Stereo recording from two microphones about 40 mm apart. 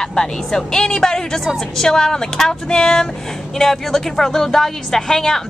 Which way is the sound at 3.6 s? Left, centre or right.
Centre.